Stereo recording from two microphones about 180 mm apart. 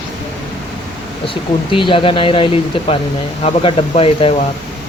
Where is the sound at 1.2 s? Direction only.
30° left (ahead or behind).